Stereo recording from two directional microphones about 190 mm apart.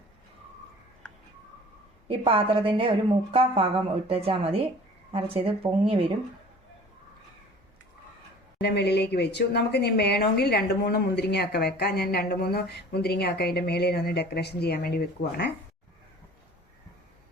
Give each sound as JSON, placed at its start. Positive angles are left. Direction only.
{"t": 1.0, "sound": "a sound", "side_deg": 5}
{"t": 2.0, "sound": "a woman's voice", "side_deg": -30}
{"t": 8.6, "sound": "speech", "side_deg": 60}